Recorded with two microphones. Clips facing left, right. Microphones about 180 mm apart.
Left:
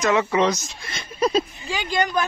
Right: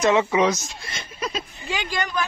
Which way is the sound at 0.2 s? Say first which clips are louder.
Even; 10° right (ahead or behind).